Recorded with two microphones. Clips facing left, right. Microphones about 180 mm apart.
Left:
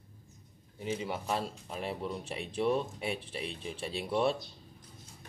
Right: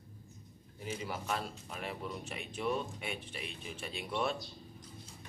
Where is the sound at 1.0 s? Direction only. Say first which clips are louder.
Left 1 dB; 30° left (ahead or behind).